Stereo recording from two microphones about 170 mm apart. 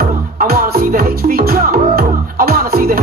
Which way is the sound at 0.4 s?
55° right (ahead or behind).